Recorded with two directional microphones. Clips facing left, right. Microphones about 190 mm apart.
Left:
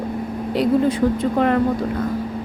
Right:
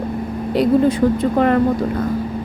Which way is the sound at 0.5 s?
40° right (ahead or behind).